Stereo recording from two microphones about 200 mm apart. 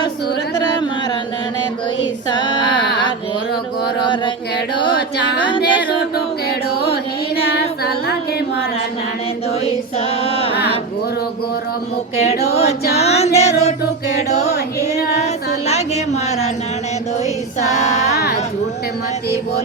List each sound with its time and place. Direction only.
0.5 s music: 20° left (ahead or behind)
2.3 s female singing: 20° left (ahead or behind)
4.8 s a sound: 25° left (ahead or behind)
10.2 s female singing: 30° left (ahead or behind)
12.1 s singing: 30° left (ahead or behind)
13.0 s music: 30° left (ahead or behind)
15.6 s a sound: 35° left (ahead or behind)
17.6 s female singing: 35° left (ahead or behind)